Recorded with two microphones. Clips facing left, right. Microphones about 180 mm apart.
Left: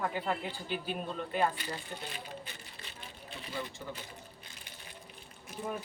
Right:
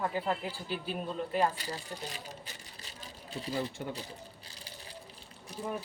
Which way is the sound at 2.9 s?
35° right (ahead or behind).